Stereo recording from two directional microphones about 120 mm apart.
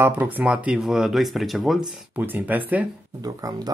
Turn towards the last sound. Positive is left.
turn(degrees=-30)  # may be behind; listen again after turning